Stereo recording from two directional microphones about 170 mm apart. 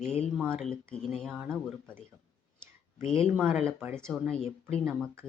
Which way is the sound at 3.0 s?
35° left (ahead or behind).